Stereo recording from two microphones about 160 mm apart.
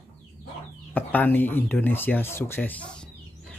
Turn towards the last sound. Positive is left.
turn(degrees=5)  # may be behind; listen again after turning